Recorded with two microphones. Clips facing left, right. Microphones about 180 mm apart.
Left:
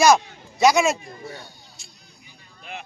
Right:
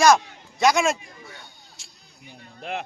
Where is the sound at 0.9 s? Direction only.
35° left (ahead or behind).